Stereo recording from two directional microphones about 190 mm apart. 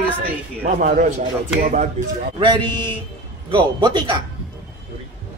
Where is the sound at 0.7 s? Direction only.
40° right (ahead or behind).